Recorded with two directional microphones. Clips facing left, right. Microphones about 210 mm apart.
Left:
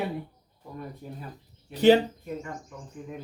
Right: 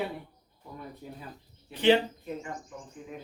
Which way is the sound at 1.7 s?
40° left (ahead or behind).